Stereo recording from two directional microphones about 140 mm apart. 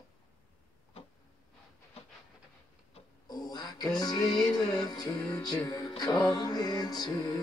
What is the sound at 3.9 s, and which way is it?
Music, 30° left (ahead or behind).